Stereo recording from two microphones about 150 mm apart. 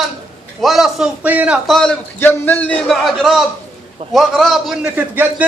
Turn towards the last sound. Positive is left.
turn(degrees=-10)  # may be behind; listen again after turning